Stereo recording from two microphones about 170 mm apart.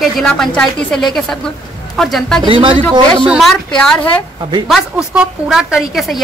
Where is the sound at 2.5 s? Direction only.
30° right (ahead or behind).